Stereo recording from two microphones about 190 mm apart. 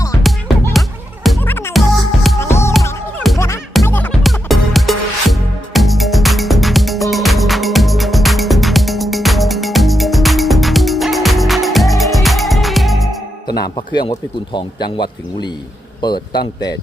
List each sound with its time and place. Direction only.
0.2 s music: centre (ahead or behind)
1.4 s music: 10° left (ahead or behind)
13.5 s speech: 20° left (ahead or behind)